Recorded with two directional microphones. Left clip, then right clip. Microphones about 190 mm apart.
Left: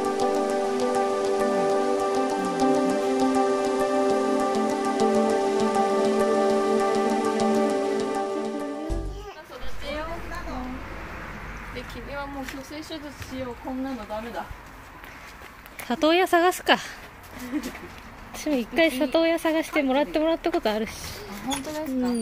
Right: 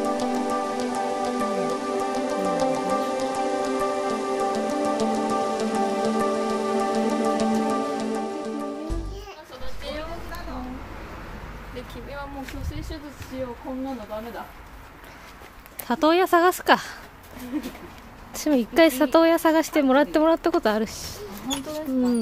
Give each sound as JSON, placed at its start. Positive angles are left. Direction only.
{"t": 0.0, "sound": "music", "side_deg": 0}
{"t": 15.9, "sound": "speech", "side_deg": -10}
{"t": 18.4, "sound": "speech", "side_deg": -30}